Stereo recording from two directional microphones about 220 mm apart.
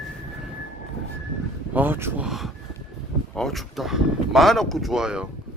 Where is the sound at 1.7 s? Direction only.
10° right (ahead or behind).